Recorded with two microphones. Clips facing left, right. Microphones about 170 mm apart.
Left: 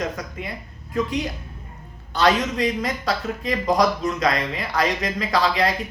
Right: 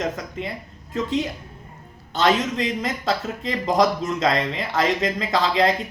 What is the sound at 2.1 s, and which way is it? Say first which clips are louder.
Speech: even; 25° right (ahead or behind).